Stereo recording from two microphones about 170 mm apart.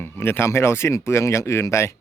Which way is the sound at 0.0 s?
15° left (ahead or behind).